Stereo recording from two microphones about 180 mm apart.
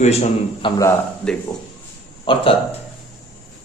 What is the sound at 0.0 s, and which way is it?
Speech, 35° left (ahead or behind).